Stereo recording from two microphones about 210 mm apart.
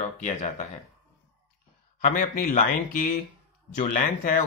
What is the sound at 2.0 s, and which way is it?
Speech, 40° left (ahead or behind).